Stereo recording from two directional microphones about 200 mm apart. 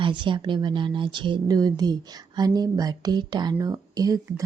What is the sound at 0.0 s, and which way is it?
Speech, 25° right (ahead or behind).